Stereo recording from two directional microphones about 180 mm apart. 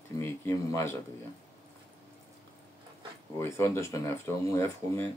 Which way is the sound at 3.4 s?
15° left (ahead or behind).